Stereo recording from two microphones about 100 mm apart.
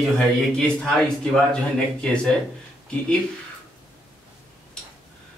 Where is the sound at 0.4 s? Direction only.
5° left (ahead or behind).